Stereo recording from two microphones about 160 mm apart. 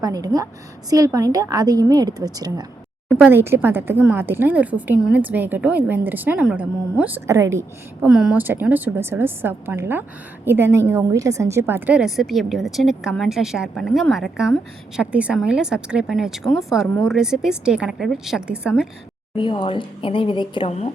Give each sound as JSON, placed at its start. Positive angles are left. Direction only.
{"t": 0.0, "sound": "a woman's voice", "side_deg": -25}
{"t": 3.1, "sound": "a woman's voice", "side_deg": -10}
{"t": 8.0, "sound": "a woman's voice", "side_deg": -5}
{"t": 19.4, "sound": "a woman's voice", "side_deg": 30}